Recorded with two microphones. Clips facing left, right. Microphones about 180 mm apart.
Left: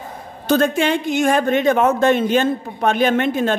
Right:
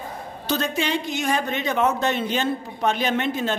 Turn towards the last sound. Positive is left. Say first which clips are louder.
# left 7 dB
turn(degrees=55)  # may be behind; listen again after turning